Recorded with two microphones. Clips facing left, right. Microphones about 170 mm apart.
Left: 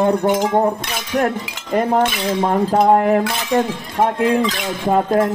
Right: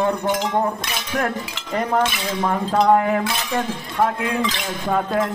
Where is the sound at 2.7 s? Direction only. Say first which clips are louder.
Left 2 dB; 45° left (ahead or behind).